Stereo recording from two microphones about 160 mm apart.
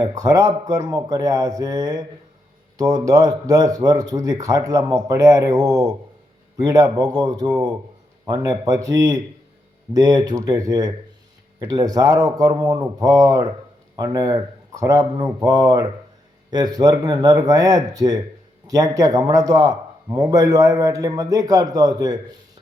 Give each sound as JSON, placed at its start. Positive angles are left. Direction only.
{"t": 0.0, "sound": "a man's voice", "side_deg": -25}